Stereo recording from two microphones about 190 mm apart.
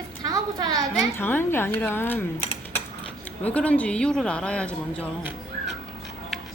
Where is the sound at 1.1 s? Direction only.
10° left (ahead or behind).